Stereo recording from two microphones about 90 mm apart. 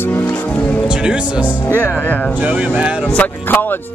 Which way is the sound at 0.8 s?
10° right (ahead or behind).